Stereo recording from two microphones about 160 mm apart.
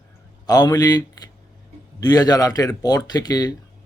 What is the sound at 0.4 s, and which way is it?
Speech, 25° left (ahead or behind).